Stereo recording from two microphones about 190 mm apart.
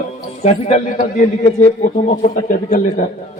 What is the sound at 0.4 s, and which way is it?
A man's voice, 40° left (ahead or behind).